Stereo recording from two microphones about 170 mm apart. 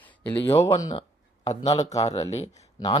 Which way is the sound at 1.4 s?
40° left (ahead or behind).